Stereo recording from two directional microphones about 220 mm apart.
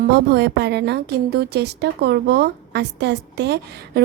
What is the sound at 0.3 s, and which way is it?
A woman's voice, 50° right (ahead or behind).